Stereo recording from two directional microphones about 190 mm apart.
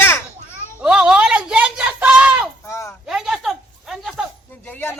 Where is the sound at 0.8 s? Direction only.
5° right (ahead or behind).